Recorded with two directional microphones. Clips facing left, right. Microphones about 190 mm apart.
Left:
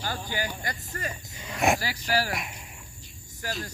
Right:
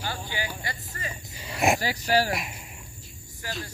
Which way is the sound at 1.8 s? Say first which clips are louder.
Right 4 dB; 40° right (ahead or behind).